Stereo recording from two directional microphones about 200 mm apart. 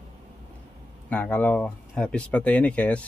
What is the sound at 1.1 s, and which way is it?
Speech, 5° left (ahead or behind).